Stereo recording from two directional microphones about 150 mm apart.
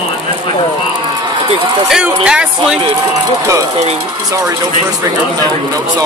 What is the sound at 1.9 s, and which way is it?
Speech, 5° right (ahead or behind).